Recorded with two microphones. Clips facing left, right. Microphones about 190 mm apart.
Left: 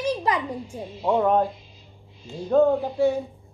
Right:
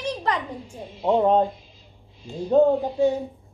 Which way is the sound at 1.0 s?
20° right (ahead or behind).